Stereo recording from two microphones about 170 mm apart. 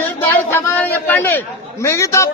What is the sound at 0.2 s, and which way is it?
Chatter, 15° left (ahead or behind).